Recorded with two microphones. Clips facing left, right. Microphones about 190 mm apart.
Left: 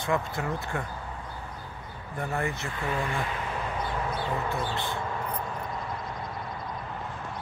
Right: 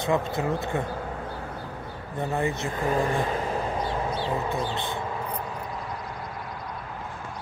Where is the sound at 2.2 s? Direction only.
20° right (ahead or behind).